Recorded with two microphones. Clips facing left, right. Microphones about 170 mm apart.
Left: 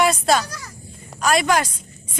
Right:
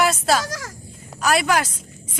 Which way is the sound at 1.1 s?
5° right (ahead or behind).